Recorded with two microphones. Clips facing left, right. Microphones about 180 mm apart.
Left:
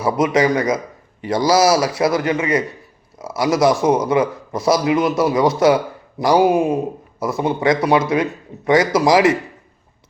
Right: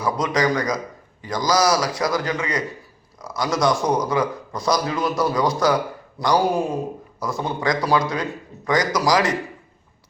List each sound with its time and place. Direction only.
0.0 s a man's voice: 25° left (ahead or behind)